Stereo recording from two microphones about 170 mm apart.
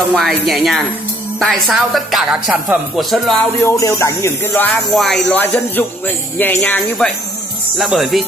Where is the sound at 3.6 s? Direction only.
20° left (ahead or behind).